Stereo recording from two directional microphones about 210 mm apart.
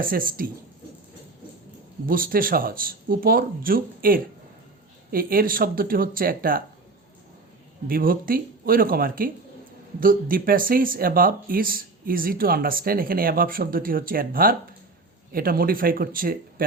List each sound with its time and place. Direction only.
0.0 s speech: 40° right (ahead or behind)
2.0 s speech: 45° right (ahead or behind)
7.9 s speech: 45° right (ahead or behind)